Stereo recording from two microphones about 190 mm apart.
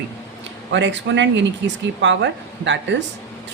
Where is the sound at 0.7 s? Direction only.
70° right (ahead or behind).